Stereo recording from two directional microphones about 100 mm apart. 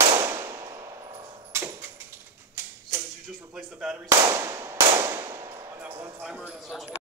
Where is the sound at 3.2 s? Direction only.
5° right (ahead or behind).